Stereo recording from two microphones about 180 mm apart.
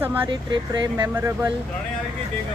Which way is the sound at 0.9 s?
15° right (ahead or behind).